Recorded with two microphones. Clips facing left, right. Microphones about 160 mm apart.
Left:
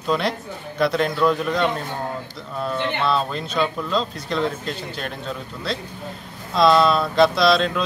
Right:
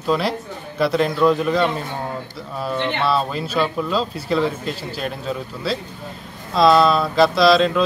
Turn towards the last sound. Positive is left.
turn(degrees=0)  # may be behind; listen again after turning